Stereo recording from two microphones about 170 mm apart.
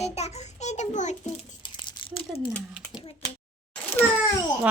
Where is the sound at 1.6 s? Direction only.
25° left (ahead or behind).